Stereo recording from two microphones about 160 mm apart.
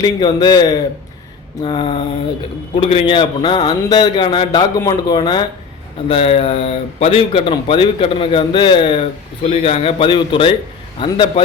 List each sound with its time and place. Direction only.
0.0 s a man's voice: 25° left (ahead or behind)